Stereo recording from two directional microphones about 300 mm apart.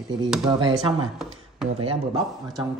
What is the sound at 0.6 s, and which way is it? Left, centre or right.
A man's voice, centre.